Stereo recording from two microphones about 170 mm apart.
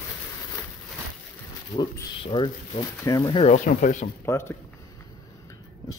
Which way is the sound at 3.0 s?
15° left (ahead or behind).